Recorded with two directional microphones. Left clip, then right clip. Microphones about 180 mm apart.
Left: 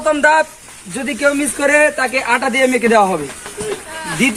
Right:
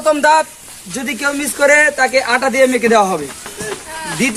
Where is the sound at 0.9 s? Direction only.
20° left (ahead or behind).